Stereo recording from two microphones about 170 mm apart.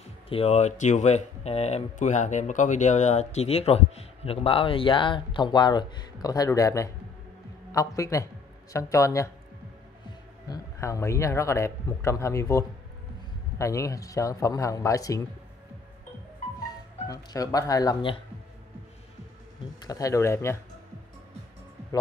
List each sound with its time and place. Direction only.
0.3 s a man's voice: 40° left (ahead or behind); by 9.3 s 20° left (ahead or behind)
10.5 s a man's voice: 20° left (ahead or behind)
17.1 s a man's voice: 20° left (ahead or behind)
19.8 s a man's voice: 20° left (ahead or behind)